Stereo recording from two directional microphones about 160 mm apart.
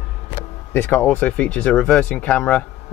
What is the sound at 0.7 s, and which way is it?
Speech, 10° left (ahead or behind).